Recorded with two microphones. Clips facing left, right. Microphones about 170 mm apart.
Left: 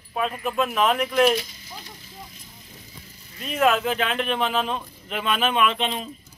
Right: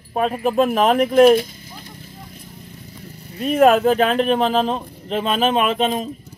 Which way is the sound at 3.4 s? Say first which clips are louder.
Right 8 dB; 45° right (ahead or behind).